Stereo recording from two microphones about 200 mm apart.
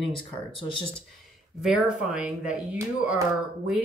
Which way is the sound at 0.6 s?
25° left (ahead or behind).